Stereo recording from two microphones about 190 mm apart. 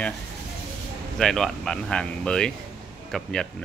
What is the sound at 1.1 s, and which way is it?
Speech, centre (ahead or behind).